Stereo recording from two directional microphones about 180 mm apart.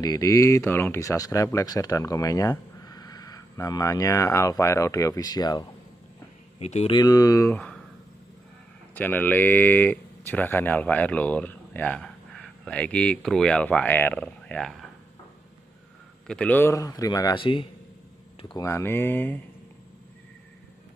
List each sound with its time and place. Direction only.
0.0 s speech: 20° left (ahead or behind)
6.6 s speech: 35° left (ahead or behind)
7.0 s speech: 20° left (ahead or behind)
8.9 s speech: 10° left (ahead or behind)
16.3 s speech: 5° left (ahead or behind); by 18.7 s 25° left (ahead or behind)
18.7 s speech: 10° left (ahead or behind)